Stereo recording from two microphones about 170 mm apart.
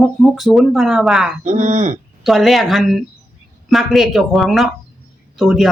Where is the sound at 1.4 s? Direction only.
45° right (ahead or behind).